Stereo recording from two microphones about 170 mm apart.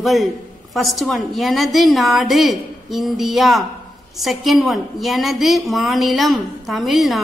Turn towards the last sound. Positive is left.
turn(degrees=0)  # may be behind; listen again after turning